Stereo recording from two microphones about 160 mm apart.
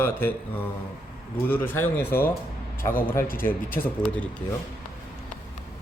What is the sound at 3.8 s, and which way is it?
Speech, 10° left (ahead or behind).